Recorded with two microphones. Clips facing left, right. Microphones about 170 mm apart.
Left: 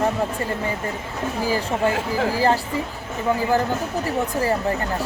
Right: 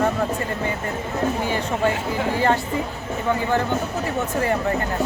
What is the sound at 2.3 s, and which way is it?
Speech, 30° left (ahead or behind).